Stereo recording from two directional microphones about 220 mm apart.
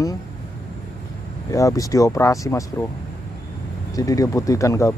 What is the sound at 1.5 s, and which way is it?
Speech, 15° left (ahead or behind).